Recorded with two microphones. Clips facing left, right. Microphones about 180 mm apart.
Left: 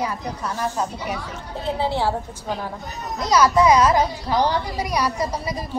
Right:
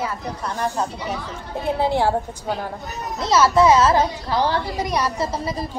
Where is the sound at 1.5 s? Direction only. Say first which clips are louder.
Right 3 dB; 15° right (ahead or behind).